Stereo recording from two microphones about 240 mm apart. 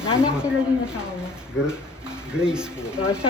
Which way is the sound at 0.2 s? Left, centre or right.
Centre.